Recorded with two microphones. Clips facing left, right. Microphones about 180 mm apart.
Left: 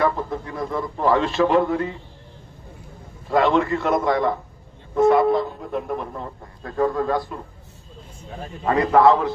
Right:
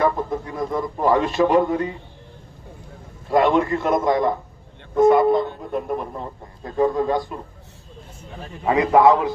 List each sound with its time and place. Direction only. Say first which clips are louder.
0.0 s a man's voice: right 1 dB; 20° right (ahead or behind)
3.3 s a man's voice: right 1 dB; 15° right (ahead or behind)
4.9 s speech: right 2 dB; centre (ahead or behind)
6.1 s a man's voice: right 1 dB; 15° right (ahead or behind)
8.6 s a man's voice: right 1 dB; 15° right (ahead or behind)
9.0 s speech: right 1 dB; centre (ahead or behind)